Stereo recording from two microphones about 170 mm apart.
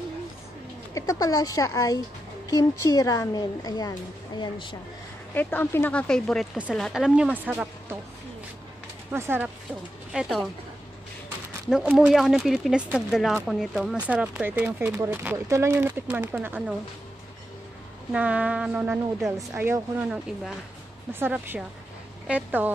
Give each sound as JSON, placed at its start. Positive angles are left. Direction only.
{"t": 0.9, "sound": "a woman's voice", "side_deg": 20}
{"t": 5.3, "sound": "speech", "side_deg": 10}
{"t": 9.1, "sound": "speech", "side_deg": -15}
{"t": 10.1, "sound": "speech", "side_deg": 0}
{"t": 11.7, "sound": "speech", "side_deg": -5}
{"t": 18.1, "sound": "speech", "side_deg": -10}